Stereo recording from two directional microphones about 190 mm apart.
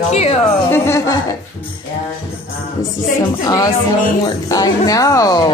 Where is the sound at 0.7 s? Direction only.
15° left (ahead or behind).